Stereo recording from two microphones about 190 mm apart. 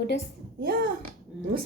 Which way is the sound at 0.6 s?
50° right (ahead or behind).